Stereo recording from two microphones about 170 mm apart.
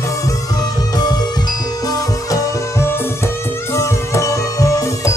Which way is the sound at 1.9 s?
15° left (ahead or behind).